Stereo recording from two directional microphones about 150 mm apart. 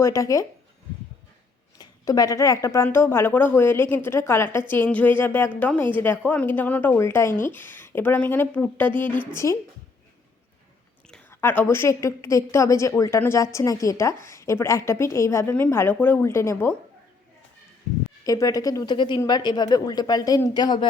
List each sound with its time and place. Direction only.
0.0 s a woman's voice: 20° left (ahead or behind)
1.8 s speech: 25° left (ahead or behind)
11.3 s a woman's voice: 15° left (ahead or behind)
18.2 s a woman's voice: 25° left (ahead or behind)